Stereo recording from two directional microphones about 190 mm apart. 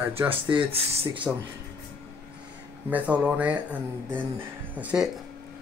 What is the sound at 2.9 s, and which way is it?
Speech, 5° right (ahead or behind).